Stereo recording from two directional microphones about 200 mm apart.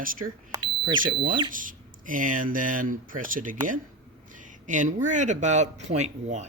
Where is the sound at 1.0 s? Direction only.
45° right (ahead or behind).